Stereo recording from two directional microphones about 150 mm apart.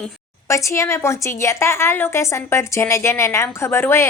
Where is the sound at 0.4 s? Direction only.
20° left (ahead or behind).